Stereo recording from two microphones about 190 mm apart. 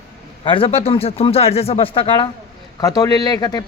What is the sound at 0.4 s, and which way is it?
Speech, 30° left (ahead or behind).